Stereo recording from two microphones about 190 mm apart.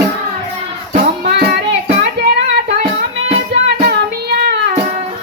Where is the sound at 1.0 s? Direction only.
55° right (ahead or behind).